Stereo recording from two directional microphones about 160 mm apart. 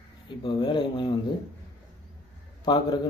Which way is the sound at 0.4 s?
30° left (ahead or behind).